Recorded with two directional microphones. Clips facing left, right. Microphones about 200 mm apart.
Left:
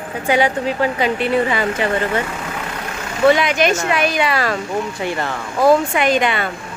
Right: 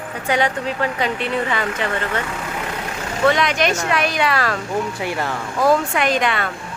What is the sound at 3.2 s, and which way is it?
Speech, 5° left (ahead or behind).